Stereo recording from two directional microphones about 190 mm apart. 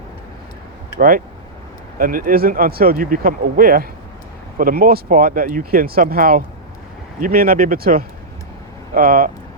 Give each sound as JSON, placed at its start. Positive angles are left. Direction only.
{"t": 0.9, "sound": "speech", "side_deg": -45}